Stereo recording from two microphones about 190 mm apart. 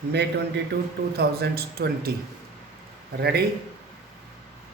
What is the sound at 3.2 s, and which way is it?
Speech, 55° right (ahead or behind).